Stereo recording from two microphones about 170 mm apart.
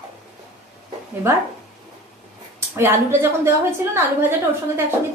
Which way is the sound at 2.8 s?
15° right (ahead or behind).